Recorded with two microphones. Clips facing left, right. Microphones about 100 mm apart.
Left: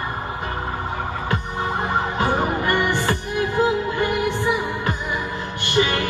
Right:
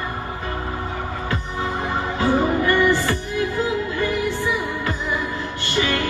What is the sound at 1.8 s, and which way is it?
Music, 20° left (ahead or behind).